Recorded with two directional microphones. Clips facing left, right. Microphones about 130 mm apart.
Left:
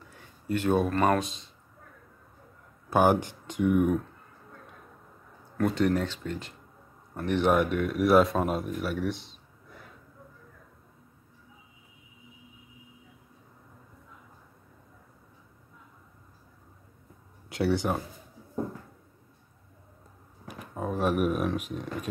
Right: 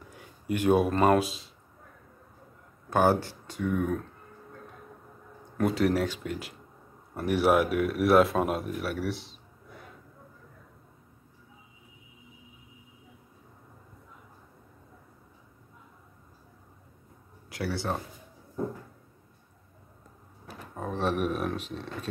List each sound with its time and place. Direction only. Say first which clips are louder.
0.1 s speech: left 1 dB; 15° right (ahead or behind)
2.9 s speech: left 1 dB; 15° left (ahead or behind)
5.6 s speech: even; 5° right (ahead or behind)
17.5 s speech: left 6 dB; 25° left (ahead or behind)
20.4 s speech: left 3 dB; 10° left (ahead or behind)